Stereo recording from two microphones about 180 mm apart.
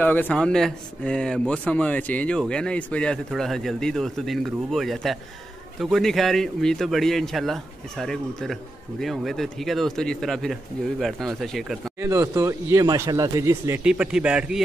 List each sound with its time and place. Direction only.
0.0 s speech: 10° left (ahead or behind)
12.0 s speech: 15° right (ahead or behind)
13.8 s speech: 5° right (ahead or behind)